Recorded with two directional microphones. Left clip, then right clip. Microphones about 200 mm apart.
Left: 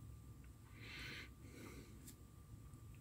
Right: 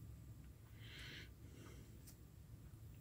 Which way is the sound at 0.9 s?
25° left (ahead or behind).